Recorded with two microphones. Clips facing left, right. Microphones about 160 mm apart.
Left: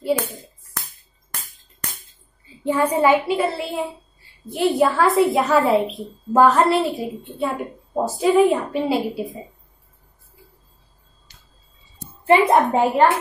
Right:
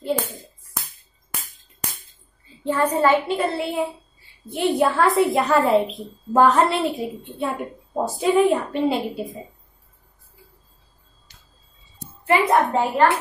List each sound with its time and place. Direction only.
2.6 s a woman's voice: 10° left (ahead or behind)
12.3 s a child's voice: 25° left (ahead or behind)